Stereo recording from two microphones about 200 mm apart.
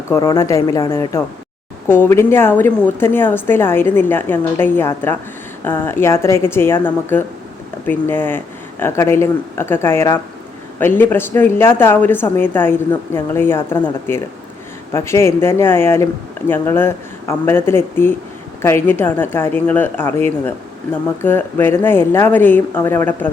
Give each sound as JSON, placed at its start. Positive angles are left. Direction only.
{"t": 0.1, "sound": "a woman's voice", "side_deg": 15}
{"t": 14.9, "sound": "a woman's voice", "side_deg": 15}